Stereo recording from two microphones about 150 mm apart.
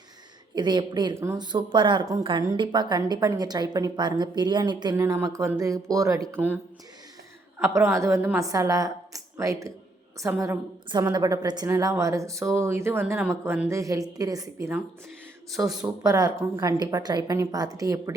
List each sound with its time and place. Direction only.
0.5 s a woman's voice: 30° right (ahead or behind)
1.1 s a woman's voice: 20° right (ahead or behind)
1.4 s a woman's voice: 30° right (ahead or behind); by 6.6 s 10° right (ahead or behind)
7.6 s a woman's voice: 20° right (ahead or behind)
11.0 s a woman's voice: 25° right (ahead or behind)
15.6 s speech: 10° right (ahead or behind)
16.0 s a woman's voice: 25° right (ahead or behind)